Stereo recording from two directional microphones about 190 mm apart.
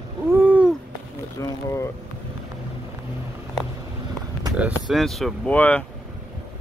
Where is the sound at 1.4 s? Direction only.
15° left (ahead or behind).